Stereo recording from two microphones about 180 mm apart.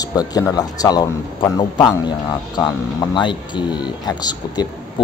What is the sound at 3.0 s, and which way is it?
Speech, 25° left (ahead or behind).